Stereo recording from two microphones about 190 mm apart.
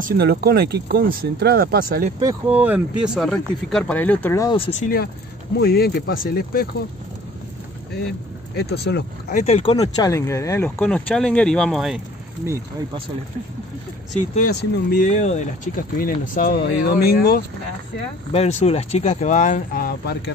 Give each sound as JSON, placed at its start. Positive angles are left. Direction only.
{"t": 0.0, "sound": "speech", "side_deg": -55}
{"t": 2.4, "sound": "speech", "side_deg": -10}
{"t": 3.3, "sound": "speech", "side_deg": 5}
{"t": 4.6, "sound": "speech", "side_deg": 35}
{"t": 5.6, "sound": "speech", "side_deg": 55}
{"t": 8.5, "sound": "speech", "side_deg": 60}
{"t": 9.3, "sound": "speech", "side_deg": 35}
{"t": 9.8, "sound": "speech", "side_deg": 20}
{"t": 10.8, "sound": "speech", "side_deg": 5}
{"t": 14.5, "sound": "speech", "side_deg": 60}
{"t": 15.0, "sound": "speech", "side_deg": 40}
{"t": 18.3, "sound": "speech", "side_deg": 35}